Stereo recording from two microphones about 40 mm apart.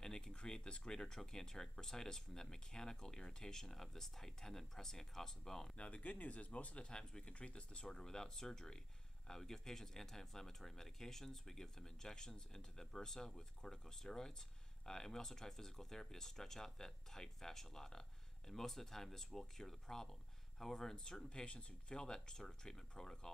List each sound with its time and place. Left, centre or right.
0.0 s a sound: centre
0.5 s speech: centre
5.8 s speech: left; by 23.3 s centre